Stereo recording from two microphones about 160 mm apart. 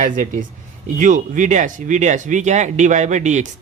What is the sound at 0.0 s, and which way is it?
Speech, 55° right (ahead or behind).